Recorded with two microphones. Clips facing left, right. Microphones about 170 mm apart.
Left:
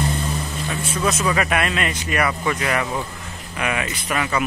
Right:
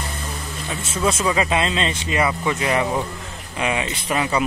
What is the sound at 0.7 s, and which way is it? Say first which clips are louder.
Speech: right 1 dB; 25° right (ahead or behind).